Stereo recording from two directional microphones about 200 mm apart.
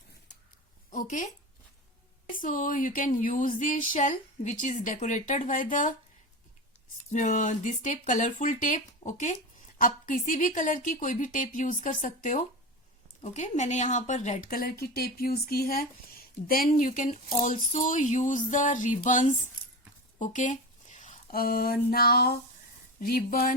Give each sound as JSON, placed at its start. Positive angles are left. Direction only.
{"t": 0.9, "sound": "a sound", "side_deg": 40}
{"t": 2.3, "sound": "speech", "side_deg": 40}
{"t": 7.1, "sound": "speech", "side_deg": 40}